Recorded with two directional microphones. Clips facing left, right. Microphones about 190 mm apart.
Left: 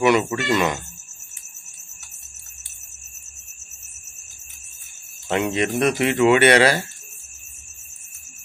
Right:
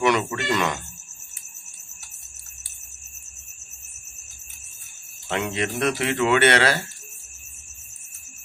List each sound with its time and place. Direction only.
0.0 s speech: 5° left (ahead or behind)
5.3 s speech: 20° left (ahead or behind)